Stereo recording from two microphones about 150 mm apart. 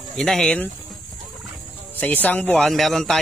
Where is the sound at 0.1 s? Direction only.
5° left (ahead or behind).